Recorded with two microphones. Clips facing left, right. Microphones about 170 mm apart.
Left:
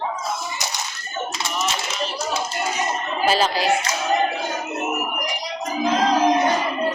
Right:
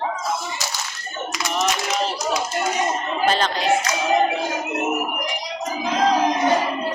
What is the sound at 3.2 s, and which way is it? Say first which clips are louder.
Speech: left 2 dB; 5° left (ahead or behind).